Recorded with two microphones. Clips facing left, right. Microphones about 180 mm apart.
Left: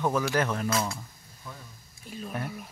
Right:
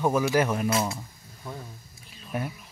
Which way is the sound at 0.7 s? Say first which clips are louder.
Right 3 dB; 25° right (ahead or behind).